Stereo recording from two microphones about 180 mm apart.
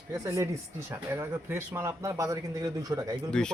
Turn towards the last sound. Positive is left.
turn(degrees=5)  # may be behind; listen again after turning